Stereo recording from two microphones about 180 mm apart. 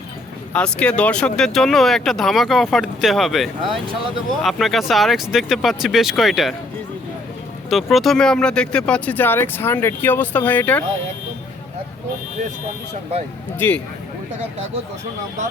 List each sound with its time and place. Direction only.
0.5 s speech: 5° left (ahead or behind)
7.7 s speech: centre (ahead or behind)
13.6 s speech: 10° left (ahead or behind)